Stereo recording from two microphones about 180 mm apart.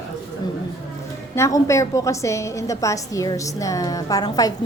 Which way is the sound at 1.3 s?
15° left (ahead or behind).